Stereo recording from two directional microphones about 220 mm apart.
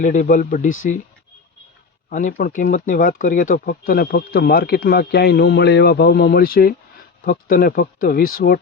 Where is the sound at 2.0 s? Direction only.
40° left (ahead or behind).